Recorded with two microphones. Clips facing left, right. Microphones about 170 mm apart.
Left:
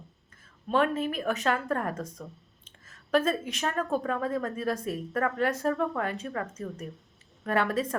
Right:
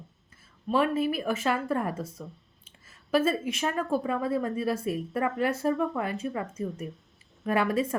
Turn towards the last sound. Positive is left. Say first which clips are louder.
# right 1 dB
turn(degrees=-10)  # may be behind; listen again after turning